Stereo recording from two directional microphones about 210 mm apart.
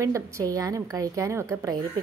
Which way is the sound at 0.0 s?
15° right (ahead or behind).